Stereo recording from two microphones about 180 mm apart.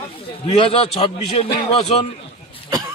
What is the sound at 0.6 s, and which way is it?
Speech, 30° left (ahead or behind).